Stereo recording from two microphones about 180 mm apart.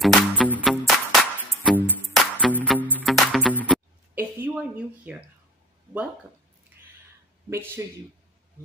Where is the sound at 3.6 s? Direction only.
10° right (ahead or behind).